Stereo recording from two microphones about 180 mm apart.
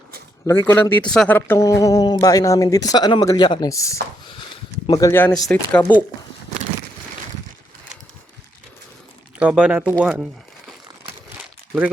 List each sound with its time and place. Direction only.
0.4 s speech: 15° left (ahead or behind)
1.4 s speech: 15° left (ahead or behind)
9.4 s speech: 5° right (ahead or behind)